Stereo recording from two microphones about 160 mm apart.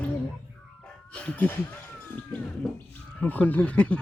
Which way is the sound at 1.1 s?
10° left (ahead or behind).